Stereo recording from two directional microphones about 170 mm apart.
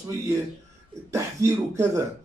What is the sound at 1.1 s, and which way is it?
Speech, 20° right (ahead or behind).